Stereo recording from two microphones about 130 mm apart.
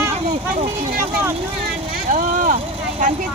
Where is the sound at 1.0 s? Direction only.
20° right (ahead or behind).